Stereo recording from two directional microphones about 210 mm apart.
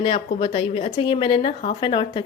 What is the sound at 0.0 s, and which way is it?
Speech, 25° left (ahead or behind).